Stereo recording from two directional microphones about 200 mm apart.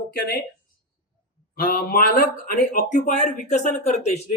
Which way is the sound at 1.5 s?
45° left (ahead or behind).